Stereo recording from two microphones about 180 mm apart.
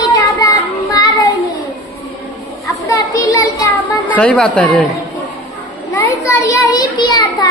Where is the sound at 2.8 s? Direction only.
20° left (ahead or behind).